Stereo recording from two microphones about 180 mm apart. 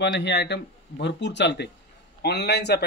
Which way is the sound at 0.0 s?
70° left (ahead or behind).